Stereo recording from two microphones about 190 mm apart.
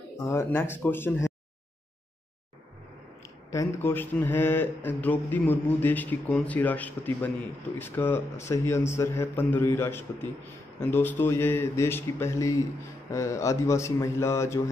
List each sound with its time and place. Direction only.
0.3 s speech: 15° left (ahead or behind)
3.8 s speech: 10° left (ahead or behind)